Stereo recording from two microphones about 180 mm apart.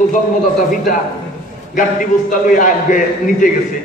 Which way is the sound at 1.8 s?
50° left (ahead or behind).